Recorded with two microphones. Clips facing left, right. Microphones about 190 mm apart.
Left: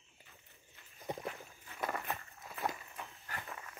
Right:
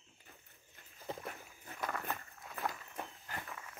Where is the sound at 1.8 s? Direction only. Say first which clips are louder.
Left 1 dB; 10° left (ahead or behind).